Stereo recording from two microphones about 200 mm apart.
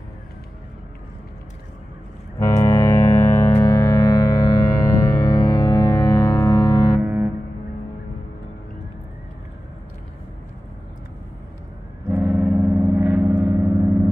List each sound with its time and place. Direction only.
2.3 s ship: 15° left (ahead or behind)
7.0 s music: 10° right (ahead or behind)
12.1 s gong: 10° right (ahead or behind)